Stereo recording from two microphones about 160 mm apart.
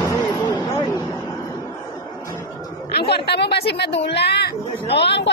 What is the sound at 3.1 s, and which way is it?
Speech, 90° left.